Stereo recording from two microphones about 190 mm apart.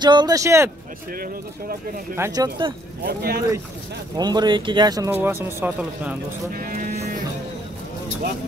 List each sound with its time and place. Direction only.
0.0 s speech: 20° right (ahead or behind)
1.1 s speech: 50° right (ahead or behind)
2.1 s speech: 15° right (ahead or behind)
3.1 s speech: 55° right (ahead or behind)
4.2 s speech: 20° right (ahead or behind)
6.5 s speech: 50° right (ahead or behind)